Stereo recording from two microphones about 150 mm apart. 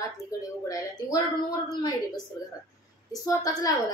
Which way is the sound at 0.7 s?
25° left (ahead or behind).